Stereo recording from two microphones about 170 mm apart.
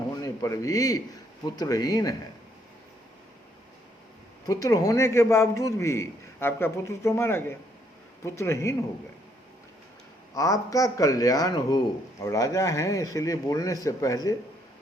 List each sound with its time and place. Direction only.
0.2 s a man's voice: 20° left (ahead or behind)
4.4 s a man's voice: 20° left (ahead or behind)
10.3 s speech: 20° left (ahead or behind)